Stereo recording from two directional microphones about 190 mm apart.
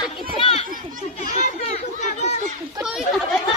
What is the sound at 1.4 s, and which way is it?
Chatter, 40° left (ahead or behind).